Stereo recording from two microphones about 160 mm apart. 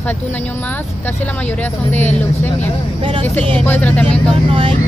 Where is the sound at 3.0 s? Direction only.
35° right (ahead or behind).